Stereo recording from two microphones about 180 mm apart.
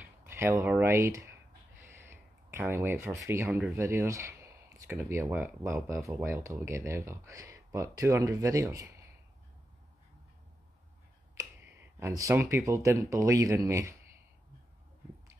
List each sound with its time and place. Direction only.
0.0 s speech: 15° right (ahead or behind)
2.0 s a sound: 15° right (ahead or behind)
3.3 s speech: 15° right (ahead or behind)
11.3 s speech: 15° right (ahead or behind)